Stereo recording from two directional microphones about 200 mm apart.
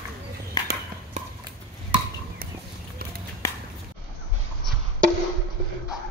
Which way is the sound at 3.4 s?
15° left (ahead or behind).